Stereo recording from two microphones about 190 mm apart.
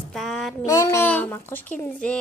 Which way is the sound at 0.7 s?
15° left (ahead or behind).